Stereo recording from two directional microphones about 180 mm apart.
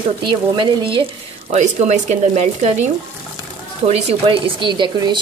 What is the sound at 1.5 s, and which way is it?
Speech, 40° right (ahead or behind).